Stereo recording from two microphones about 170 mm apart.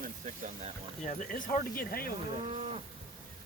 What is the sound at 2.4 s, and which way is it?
Moo, 35° right (ahead or behind).